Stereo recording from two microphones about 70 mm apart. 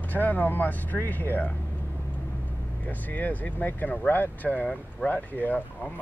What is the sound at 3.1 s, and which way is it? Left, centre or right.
Speech, left.